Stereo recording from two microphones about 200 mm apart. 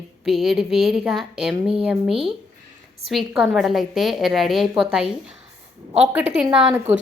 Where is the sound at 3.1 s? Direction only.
Centre (ahead or behind).